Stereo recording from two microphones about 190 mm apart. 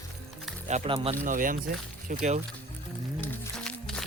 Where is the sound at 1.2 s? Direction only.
45° right (ahead or behind).